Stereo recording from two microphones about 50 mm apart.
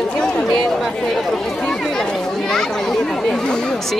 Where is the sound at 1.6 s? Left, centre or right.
Centre.